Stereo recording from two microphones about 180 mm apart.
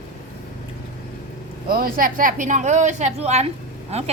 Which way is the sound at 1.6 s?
55° right (ahead or behind).